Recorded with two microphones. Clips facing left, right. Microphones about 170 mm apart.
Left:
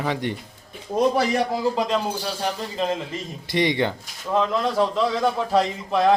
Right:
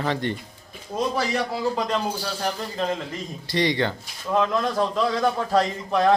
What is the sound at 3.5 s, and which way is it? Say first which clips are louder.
Speech: left 1 dB; 20° left (ahead or behind).